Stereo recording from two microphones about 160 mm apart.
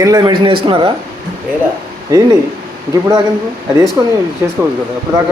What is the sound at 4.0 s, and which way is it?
Speech, 20° right (ahead or behind).